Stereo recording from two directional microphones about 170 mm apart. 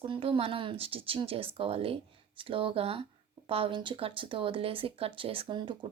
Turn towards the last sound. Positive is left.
turn(degrees=-30)  # may be behind; listen again after turning